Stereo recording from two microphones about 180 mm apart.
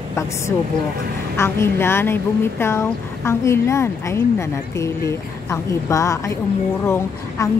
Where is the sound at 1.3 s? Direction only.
15° left (ahead or behind).